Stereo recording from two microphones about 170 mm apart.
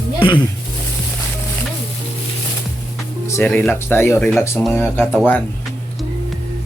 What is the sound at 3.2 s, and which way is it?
Speech, 15° left (ahead or behind).